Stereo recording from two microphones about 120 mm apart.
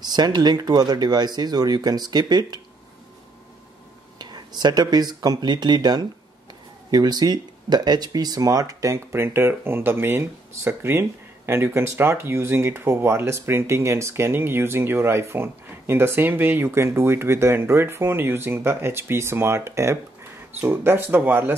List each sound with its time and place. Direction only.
0.0 s speech: 35° right (ahead or behind)
4.2 s speech: 35° right (ahead or behind); by 21.5 s 15° right (ahead or behind)